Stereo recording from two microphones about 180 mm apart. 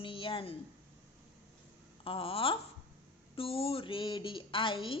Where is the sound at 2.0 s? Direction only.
30° left (ahead or behind).